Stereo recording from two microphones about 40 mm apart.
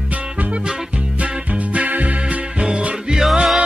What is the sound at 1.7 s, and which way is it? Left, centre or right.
Music, right.